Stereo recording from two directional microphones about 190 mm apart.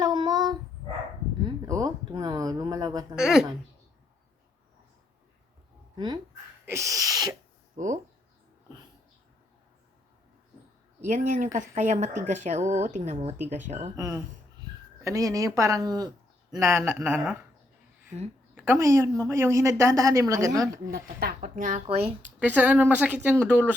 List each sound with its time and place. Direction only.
0.0 s dog: 20° right (ahead or behind)
1.5 s a sound: 20° right (ahead or behind)
3.2 s speech: 5° right (ahead or behind)
6.7 s a woman's voice: 15° right (ahead or behind)
7.8 s speech: 40° right (ahead or behind)
11.0 s speech: 40° right (ahead or behind)
13.9 s a woman's voice: 15° right (ahead or behind)
18.5 s a woman's voice: 10° right (ahead or behind)
20.9 s speech: 55° right (ahead or behind)
21.8 s speech: 30° right (ahead or behind)
22.2 s a woman's voice: 10° right (ahead or behind)